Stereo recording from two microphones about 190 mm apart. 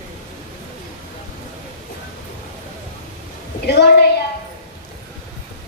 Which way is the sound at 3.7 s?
60° left (ahead or behind).